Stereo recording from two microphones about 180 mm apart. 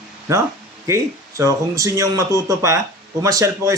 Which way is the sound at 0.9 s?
15° right (ahead or behind).